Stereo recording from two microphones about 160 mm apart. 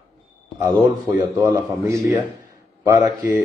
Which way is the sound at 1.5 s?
20° right (ahead or behind).